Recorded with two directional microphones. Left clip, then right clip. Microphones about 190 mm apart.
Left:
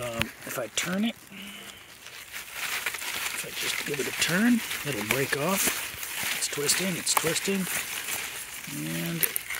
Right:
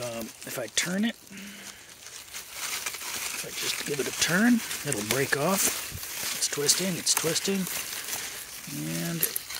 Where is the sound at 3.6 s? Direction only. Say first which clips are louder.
Even; 10° right (ahead or behind).